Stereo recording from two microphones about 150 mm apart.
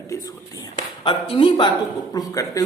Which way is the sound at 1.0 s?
35° left (ahead or behind).